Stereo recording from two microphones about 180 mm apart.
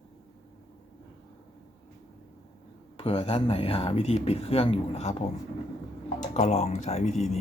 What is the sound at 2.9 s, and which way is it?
Speech, 30° left (ahead or behind).